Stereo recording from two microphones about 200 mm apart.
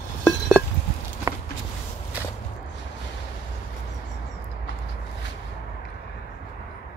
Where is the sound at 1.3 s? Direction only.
15° right (ahead or behind).